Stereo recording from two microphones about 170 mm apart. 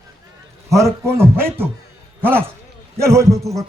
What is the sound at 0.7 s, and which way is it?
A man's voice, 15° right (ahead or behind).